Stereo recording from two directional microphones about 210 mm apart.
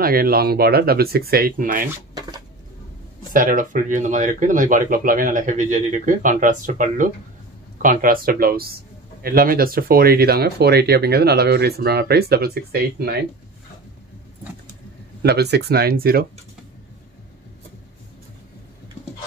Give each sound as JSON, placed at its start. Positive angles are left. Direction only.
{"t": 0.0, "sound": "speech", "side_deg": -45}
{"t": 3.3, "sound": "speech", "side_deg": -40}
{"t": 15.2, "sound": "speech", "side_deg": -50}